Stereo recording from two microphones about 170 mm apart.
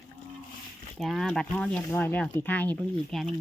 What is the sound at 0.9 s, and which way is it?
Speech, centre (ahead or behind).